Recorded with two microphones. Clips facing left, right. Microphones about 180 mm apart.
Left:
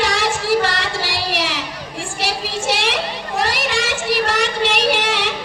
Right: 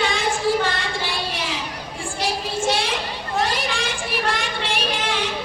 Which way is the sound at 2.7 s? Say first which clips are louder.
Left 3 dB; 85° left.